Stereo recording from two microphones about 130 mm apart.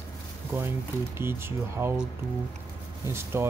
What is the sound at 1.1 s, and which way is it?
Speech, 20° right (ahead or behind).